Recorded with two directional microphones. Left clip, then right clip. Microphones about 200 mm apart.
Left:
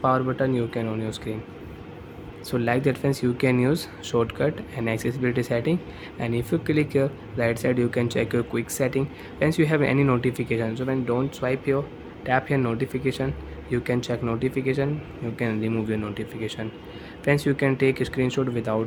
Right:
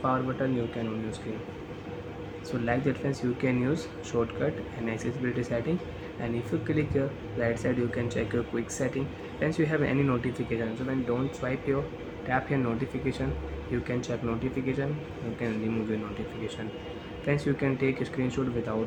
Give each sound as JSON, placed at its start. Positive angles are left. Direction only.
{"t": 0.0, "sound": "speech", "side_deg": 50}
{"t": 2.5, "sound": "speech", "side_deg": 55}
{"t": 17.2, "sound": "speech", "side_deg": 45}